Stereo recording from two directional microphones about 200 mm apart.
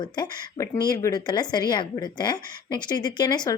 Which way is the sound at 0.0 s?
20° left (ahead or behind).